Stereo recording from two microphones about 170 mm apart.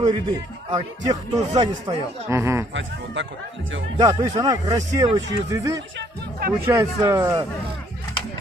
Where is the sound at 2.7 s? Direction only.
90° right.